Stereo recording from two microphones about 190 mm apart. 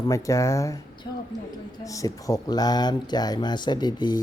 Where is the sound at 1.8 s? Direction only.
15° left (ahead or behind).